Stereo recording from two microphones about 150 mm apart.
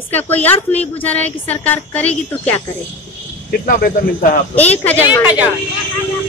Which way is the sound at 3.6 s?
80° left.